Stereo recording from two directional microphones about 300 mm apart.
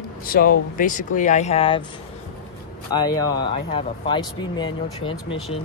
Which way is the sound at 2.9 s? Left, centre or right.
Centre.